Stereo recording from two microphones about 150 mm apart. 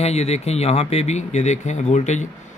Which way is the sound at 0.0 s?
45° left (ahead or behind).